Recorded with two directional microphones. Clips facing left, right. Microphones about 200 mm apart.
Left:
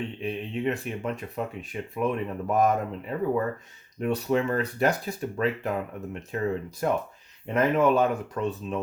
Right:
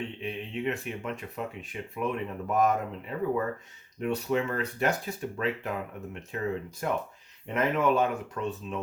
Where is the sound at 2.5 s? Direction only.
35° left (ahead or behind).